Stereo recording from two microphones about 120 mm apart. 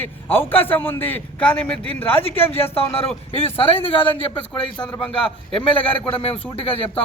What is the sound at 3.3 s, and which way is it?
A man's voice, 50° left (ahead or behind).